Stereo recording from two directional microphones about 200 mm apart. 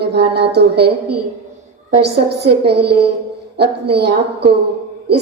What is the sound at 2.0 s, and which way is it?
A woman's voice, 55° right (ahead or behind).